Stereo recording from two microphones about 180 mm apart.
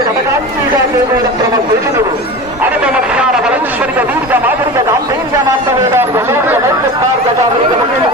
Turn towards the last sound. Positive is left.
turn(degrees=-15)  # may be behind; listen again after turning